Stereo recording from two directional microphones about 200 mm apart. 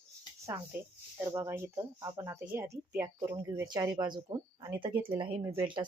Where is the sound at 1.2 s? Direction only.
15° right (ahead or behind).